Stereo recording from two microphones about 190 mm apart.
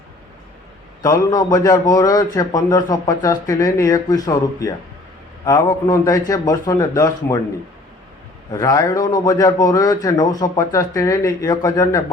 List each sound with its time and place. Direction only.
1.0 s a man's voice: 20° left (ahead or behind)
8.4 s a man's voice: 20° left (ahead or behind)